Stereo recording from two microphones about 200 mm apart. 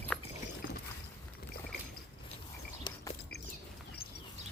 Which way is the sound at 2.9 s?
20° left (ahead or behind).